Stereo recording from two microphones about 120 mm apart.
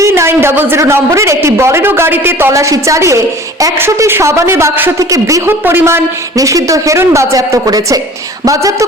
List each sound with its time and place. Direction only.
0.0 s a woman's voice: 20° right (ahead or behind)